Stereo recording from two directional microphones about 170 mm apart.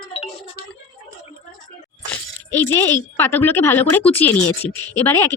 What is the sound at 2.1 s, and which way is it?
A woman's voice, 10° left (ahead or behind).